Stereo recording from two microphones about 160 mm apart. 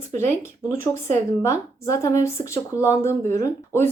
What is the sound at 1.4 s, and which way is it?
Speech, 20° left (ahead or behind).